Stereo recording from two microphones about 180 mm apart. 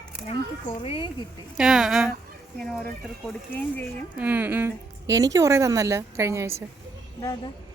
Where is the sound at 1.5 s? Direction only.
Centre (ahead or behind).